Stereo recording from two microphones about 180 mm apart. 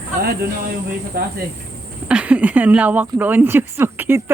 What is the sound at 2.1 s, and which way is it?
Speech, 5° right (ahead or behind).